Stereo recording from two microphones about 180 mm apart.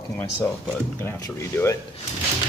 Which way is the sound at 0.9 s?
15° left (ahead or behind).